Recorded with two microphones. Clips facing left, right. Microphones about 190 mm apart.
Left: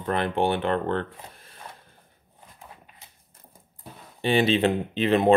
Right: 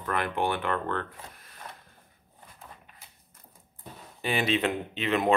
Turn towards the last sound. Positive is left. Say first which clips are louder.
# left 6 dB
turn(degrees=30)  # may be behind; listen again after turning